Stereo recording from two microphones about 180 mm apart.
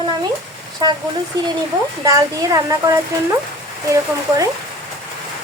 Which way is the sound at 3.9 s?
20° right (ahead or behind).